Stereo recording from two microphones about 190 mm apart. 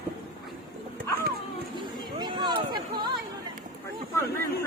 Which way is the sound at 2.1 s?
25° right (ahead or behind).